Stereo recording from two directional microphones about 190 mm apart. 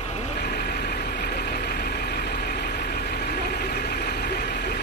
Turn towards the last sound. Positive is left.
turn(degrees=55)  # may be behind; listen again after turning